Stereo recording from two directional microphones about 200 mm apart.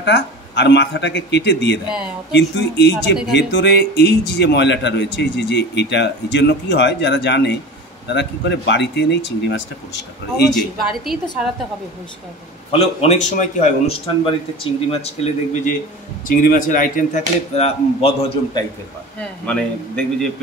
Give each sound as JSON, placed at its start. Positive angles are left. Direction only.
{"t": 0.0, "sound": "speech", "side_deg": 60}
{"t": 10.5, "sound": "speech", "side_deg": 0}
{"t": 12.7, "sound": "speech", "side_deg": 30}
{"t": 16.3, "sound": "speech", "side_deg": 45}
{"t": 19.1, "sound": "speech", "side_deg": 5}